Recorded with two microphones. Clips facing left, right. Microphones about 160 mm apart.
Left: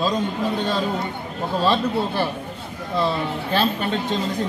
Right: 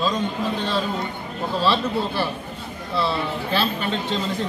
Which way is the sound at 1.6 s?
45° left (ahead or behind).